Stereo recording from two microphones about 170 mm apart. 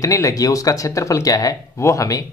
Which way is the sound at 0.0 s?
20° left (ahead or behind).